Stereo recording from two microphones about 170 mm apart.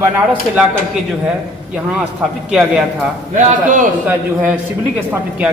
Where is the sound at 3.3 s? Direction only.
50° right (ahead or behind).